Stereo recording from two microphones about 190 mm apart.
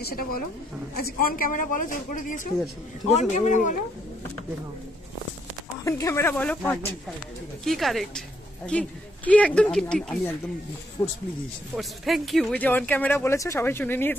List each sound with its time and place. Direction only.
0.0 s a man's voice: 50° left (ahead or behind)
5.9 s speech: 15° left (ahead or behind)
11.0 s speech: 25° left (ahead or behind)
11.7 s speech: centre (ahead or behind)